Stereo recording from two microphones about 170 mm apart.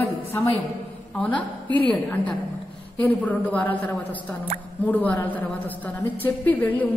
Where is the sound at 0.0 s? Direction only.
10° left (ahead or behind).